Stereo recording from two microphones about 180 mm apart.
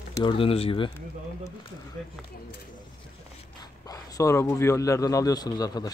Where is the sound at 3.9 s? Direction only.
15° left (ahead or behind).